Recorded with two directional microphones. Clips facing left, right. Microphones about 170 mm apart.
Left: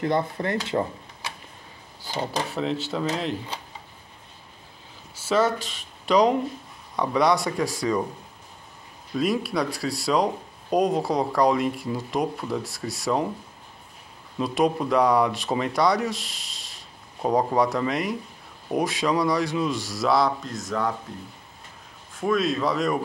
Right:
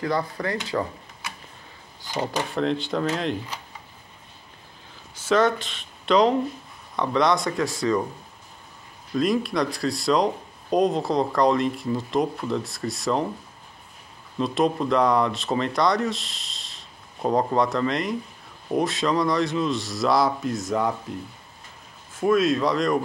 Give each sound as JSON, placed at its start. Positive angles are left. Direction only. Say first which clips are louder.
{"t": 0.0, "sound": "speech", "louder": "left 1 dB", "side_deg": 25}
{"t": 2.5, "sound": "speech", "louder": "right 3 dB", "side_deg": 5}
{"t": 5.1, "sound": "speech", "louder": "right 2 dB", "side_deg": 5}
{"t": 9.1, "sound": "speech", "louder": "right 2 dB", "side_deg": 5}
{"t": 14.4, "sound": "speech", "louder": "even", "side_deg": 10}
{"t": 20.4, "sound": "speech", "louder": "right 3 dB", "side_deg": -10}
{"t": 22.2, "sound": "speech", "louder": "right 3 dB", "side_deg": 0}